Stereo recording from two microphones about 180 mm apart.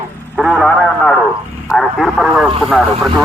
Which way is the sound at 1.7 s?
Centre (ahead or behind).